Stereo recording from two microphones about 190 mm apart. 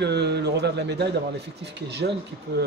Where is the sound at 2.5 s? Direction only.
60° right (ahead or behind).